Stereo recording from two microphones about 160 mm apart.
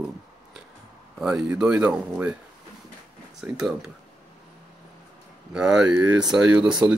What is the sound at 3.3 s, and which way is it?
Speech, 5° right (ahead or behind).